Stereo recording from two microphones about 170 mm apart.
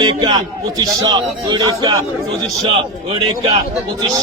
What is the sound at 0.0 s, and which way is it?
A man's voice, 25° right (ahead or behind).